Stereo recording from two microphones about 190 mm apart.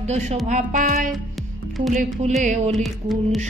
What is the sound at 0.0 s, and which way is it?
A woman's voice, 35° right (ahead or behind).